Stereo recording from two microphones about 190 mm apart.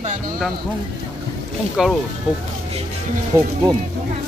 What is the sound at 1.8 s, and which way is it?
Speech, 5° right (ahead or behind).